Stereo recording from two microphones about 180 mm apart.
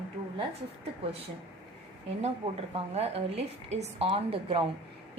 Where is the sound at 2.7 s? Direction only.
35° right (ahead or behind).